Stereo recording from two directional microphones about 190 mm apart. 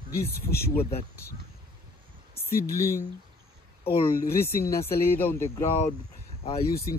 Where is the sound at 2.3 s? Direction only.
15° left (ahead or behind).